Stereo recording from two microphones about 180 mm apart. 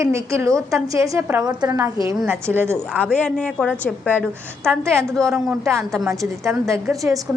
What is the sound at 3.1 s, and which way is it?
A woman's voice, 5° left (ahead or behind).